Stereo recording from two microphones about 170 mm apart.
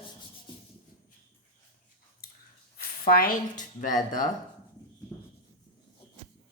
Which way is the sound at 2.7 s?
60° left (ahead or behind).